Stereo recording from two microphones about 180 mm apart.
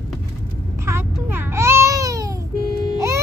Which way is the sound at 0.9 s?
15° right (ahead or behind).